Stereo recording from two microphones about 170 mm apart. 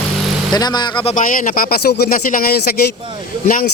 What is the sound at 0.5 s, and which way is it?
Speech, 25° left (ahead or behind).